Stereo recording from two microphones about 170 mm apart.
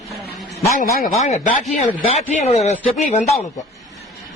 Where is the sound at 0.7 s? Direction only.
55° left (ahead or behind).